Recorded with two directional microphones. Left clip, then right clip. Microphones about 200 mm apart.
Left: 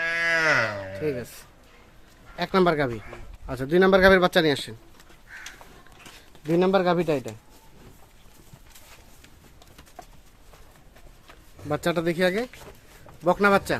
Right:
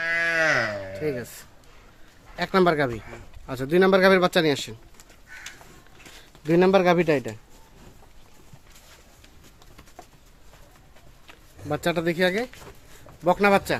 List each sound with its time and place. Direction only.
0.0 s livestock: 45° left (ahead or behind)
0.9 s a man's voice: 5° right (ahead or behind)
6.5 s speech: 20° right (ahead or behind)
11.7 s a man's voice: centre (ahead or behind)